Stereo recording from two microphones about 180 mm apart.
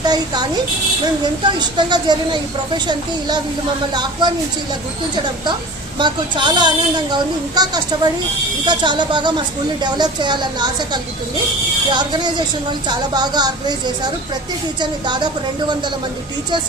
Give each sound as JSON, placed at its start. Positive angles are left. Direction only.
{"t": 0.0, "sound": "a woman's voice", "side_deg": -25}
{"t": 6.0, "sound": "a woman's voice", "side_deg": -25}